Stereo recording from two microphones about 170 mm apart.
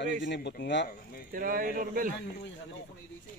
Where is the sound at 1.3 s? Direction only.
55° right (ahead or behind).